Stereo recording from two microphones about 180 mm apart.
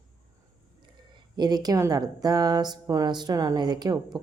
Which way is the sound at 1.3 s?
20° right (ahead or behind).